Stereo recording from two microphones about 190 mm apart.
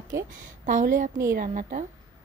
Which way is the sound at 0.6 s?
45° right (ahead or behind).